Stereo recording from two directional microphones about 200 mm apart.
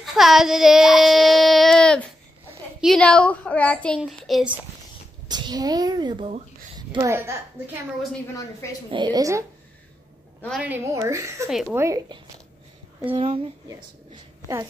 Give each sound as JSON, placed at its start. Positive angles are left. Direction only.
{"t": 0.0, "sound": "a woman's voice", "side_deg": 0}
{"t": 5.3, "sound": "speech", "side_deg": -20}
{"t": 6.9, "sound": "a woman's voice", "side_deg": -15}
{"t": 8.9, "sound": "speech", "side_deg": -20}
{"t": 10.6, "sound": "a woman's voice", "side_deg": -10}
{"t": 11.4, "sound": "a woman's voice", "side_deg": 0}
{"t": 11.7, "sound": "a woman's voice", "side_deg": -15}
{"t": 13.1, "sound": "speech", "side_deg": -30}